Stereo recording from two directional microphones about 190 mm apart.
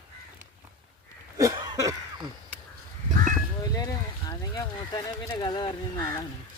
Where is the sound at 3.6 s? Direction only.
20° left (ahead or behind).